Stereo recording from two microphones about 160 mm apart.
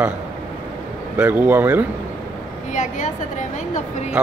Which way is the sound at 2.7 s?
50° left (ahead or behind).